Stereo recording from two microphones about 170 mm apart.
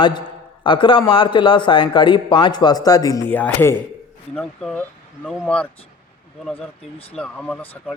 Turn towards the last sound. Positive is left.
turn(degrees=10)  # may be behind; listen again after turning